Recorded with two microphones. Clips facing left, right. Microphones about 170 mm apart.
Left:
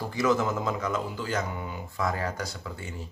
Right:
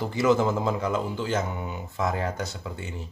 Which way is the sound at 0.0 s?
25° right (ahead or behind).